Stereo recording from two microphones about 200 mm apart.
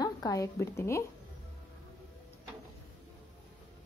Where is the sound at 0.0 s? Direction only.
20° left (ahead or behind).